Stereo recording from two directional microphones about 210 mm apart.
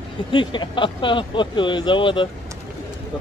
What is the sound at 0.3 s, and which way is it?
Speech, 20° left (ahead or behind).